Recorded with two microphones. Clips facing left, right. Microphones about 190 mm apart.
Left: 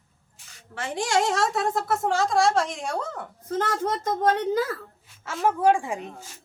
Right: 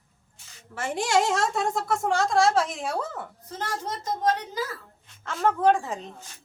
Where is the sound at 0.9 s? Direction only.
Centre (ahead or behind).